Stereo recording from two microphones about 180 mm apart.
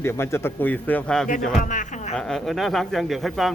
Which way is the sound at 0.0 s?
15° left (ahead or behind).